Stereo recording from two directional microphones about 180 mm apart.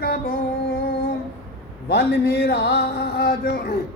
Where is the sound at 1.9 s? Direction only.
65° left (ahead or behind).